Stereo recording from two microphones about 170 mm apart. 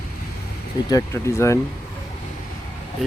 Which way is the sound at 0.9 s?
15° left (ahead or behind).